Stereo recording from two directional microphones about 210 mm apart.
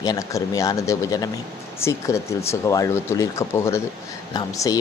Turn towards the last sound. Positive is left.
turn(degrees=15)  # may be behind; listen again after turning